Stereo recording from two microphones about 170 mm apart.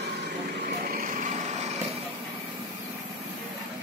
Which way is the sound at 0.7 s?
55° right (ahead or behind).